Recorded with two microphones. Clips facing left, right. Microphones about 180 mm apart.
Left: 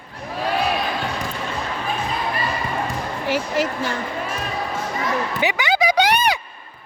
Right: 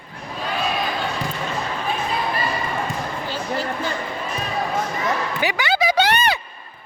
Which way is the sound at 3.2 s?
80° left.